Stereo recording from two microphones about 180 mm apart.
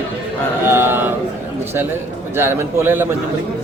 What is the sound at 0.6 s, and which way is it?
Speech, 15° right (ahead or behind).